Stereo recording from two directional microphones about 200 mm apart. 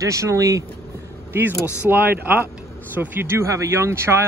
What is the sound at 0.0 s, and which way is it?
Speech, 15° right (ahead or behind).